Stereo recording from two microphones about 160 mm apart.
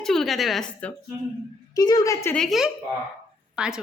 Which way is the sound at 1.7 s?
25° left (ahead or behind).